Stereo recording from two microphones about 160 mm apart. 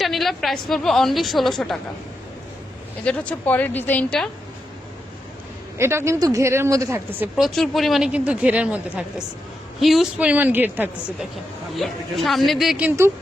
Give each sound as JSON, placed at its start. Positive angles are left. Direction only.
{"t": 0.0, "sound": "speech", "side_deg": 0}
{"t": 3.0, "sound": "speech", "side_deg": 5}
{"t": 5.7, "sound": "speech", "side_deg": -15}
{"t": 7.3, "sound": "speech", "side_deg": 0}
{"t": 11.8, "sound": "speech", "side_deg": 0}